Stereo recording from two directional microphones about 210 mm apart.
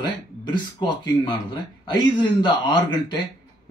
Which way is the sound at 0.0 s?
20° left (ahead or behind).